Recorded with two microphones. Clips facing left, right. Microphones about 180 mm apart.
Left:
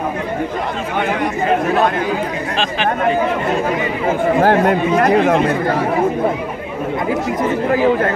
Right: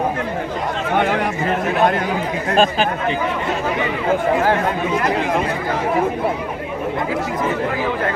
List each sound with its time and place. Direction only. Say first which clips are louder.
2.5 s speech: right 6 dB; 50° right (ahead or behind)
4.4 s speech: left 5 dB; 55° left (ahead or behind)